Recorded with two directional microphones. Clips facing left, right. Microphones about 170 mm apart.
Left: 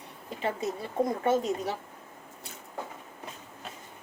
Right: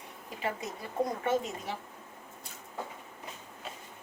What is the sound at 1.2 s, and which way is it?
Speech, 35° left (ahead or behind).